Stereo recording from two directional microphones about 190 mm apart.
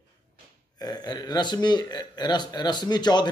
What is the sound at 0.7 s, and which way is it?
Speech, 20° left (ahead or behind).